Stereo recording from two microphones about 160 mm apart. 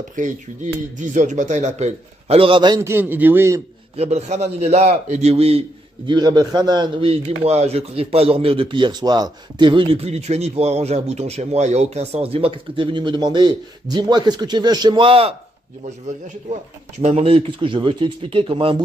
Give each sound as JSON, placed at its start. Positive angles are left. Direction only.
{"t": 0.2, "sound": "a man's voice", "side_deg": -55}
{"t": 2.9, "sound": "a man's voice", "side_deg": -10}
{"t": 3.9, "sound": "a man's voice", "side_deg": -40}
{"t": 6.0, "sound": "a man's voice", "side_deg": -25}
{"t": 17.0, "sound": "a man's voice", "side_deg": -35}